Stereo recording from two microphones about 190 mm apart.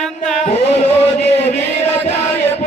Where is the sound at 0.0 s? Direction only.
Centre (ahead or behind).